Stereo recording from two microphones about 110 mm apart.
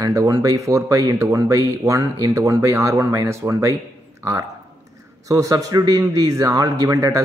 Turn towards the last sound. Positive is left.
turn(degrees=-30)  # may be behind; listen again after turning